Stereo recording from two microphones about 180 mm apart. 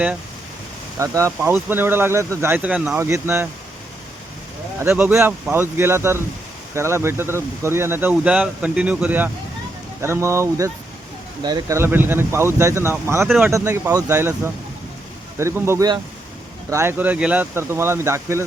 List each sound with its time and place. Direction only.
0.9 s speech: 15° right (ahead or behind)
4.8 s speech: 10° right (ahead or behind)